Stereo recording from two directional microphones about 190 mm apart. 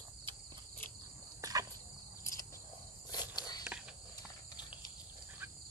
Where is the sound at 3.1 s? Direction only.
20° left (ahead or behind).